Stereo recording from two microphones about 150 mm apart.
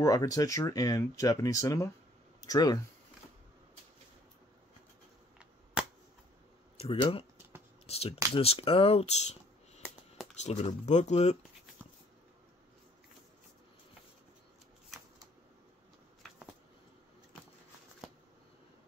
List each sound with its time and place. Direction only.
0.0 s speech: 20° left (ahead or behind)
6.8 s speech: 35° left (ahead or behind)
7.8 s computer keyboard: 40° left (ahead or behind)
8.4 s speech: 40° left (ahead or behind)
14.9 s shuffling cards: 5° right (ahead or behind)